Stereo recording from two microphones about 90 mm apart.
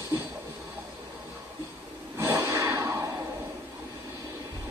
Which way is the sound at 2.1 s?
30° right (ahead or behind).